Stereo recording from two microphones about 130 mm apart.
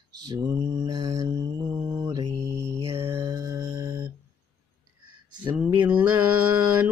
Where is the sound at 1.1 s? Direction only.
30° right (ahead or behind).